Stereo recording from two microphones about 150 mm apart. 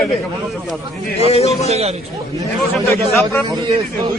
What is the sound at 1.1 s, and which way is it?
Speech, 45° left (ahead or behind).